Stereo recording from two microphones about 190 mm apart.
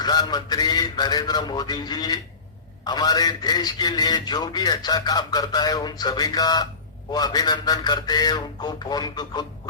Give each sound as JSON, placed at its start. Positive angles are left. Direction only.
{"t": 0.0, "sound": "a man's voice", "side_deg": 20}